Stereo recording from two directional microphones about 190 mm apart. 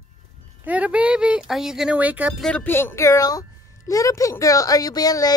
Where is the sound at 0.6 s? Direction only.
5° right (ahead or behind).